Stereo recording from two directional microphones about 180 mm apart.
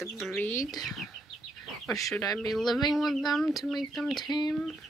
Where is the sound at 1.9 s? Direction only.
20° left (ahead or behind).